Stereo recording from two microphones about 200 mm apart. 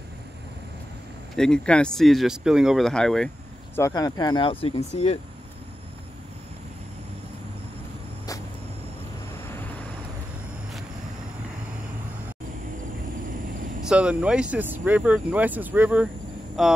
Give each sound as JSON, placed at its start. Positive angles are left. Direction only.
{"t": 1.3, "sound": "speech", "side_deg": 5}
{"t": 3.7, "sound": "speech", "side_deg": 15}
{"t": 13.8, "sound": "speech", "side_deg": -5}